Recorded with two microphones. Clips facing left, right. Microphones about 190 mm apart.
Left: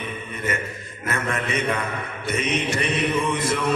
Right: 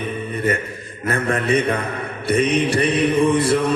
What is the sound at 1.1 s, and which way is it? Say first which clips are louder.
A man's voice: right 7 dB; 35° right (ahead or behind).